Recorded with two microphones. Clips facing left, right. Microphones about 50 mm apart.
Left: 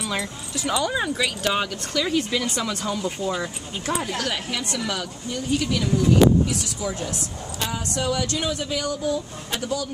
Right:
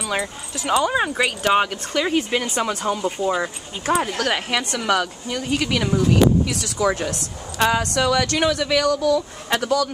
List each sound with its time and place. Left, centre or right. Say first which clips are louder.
0.1 s speech: right 3 dB; right
4.2 s speech: right 5 dB; right